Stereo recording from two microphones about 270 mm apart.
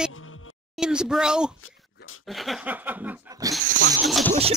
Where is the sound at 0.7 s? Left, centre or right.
Centre.